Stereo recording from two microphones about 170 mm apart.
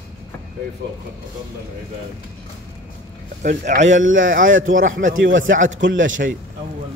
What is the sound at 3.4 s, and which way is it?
A man's voice, 45° right (ahead or behind).